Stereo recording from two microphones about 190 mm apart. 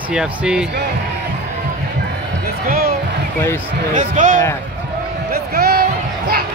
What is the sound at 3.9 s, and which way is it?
Speech, 40° right (ahead or behind).